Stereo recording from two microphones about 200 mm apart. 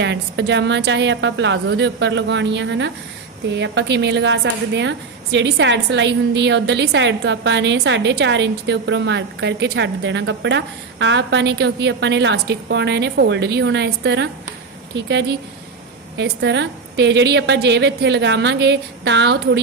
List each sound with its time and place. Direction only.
0.0 s a woman's voice: 60° right (ahead or behind)